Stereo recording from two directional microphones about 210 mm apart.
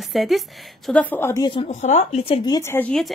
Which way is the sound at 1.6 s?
35° left (ahead or behind).